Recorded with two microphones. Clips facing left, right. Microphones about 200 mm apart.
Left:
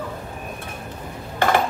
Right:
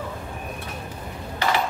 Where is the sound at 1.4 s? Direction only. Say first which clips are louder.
Left 5 dB; 50° left (ahead or behind).